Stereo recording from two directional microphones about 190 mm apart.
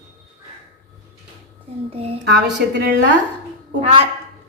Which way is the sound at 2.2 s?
65° right (ahead or behind).